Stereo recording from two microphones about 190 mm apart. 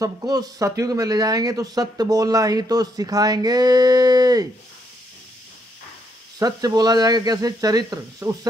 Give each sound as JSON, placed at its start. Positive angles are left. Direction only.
{"t": 0.0, "sound": "speech", "side_deg": -20}
{"t": 6.4, "sound": "speech", "side_deg": -20}